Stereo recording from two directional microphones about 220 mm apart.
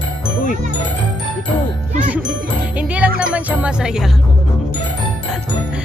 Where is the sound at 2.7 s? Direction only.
5° right (ahead or behind).